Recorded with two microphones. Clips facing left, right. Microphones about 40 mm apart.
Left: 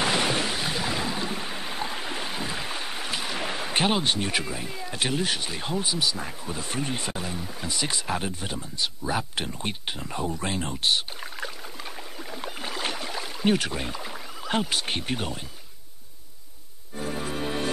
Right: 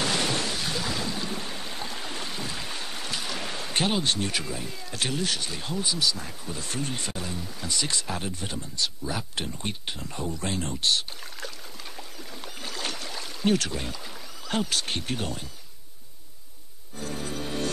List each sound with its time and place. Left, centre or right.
0.0 s boat: centre
12.4 s rowboat: centre
16.9 s music: centre